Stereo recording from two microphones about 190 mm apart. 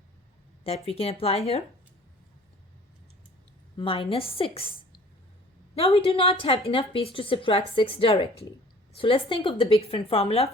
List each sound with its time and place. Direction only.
0.6 s a woman's voice: 30° left (ahead or behind)
3.8 s speech: 25° left (ahead or behind)
5.7 s a woman's voice: 30° left (ahead or behind)